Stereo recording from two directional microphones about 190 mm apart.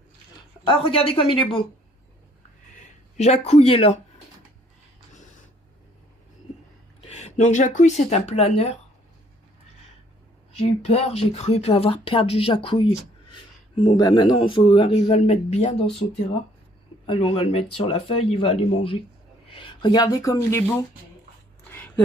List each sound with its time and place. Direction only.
0.7 s speech: 30° left (ahead or behind)
2.8 s speech: 35° left (ahead or behind)
7.0 s speech: 35° left (ahead or behind)
10.6 s speech: 30° left (ahead or behind)
17.0 s speech: 30° left (ahead or behind)